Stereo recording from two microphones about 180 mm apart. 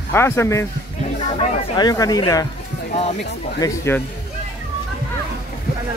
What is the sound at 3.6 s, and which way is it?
Speech, 15° left (ahead or behind).